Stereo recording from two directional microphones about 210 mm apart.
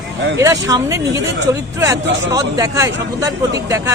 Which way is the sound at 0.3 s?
15° right (ahead or behind).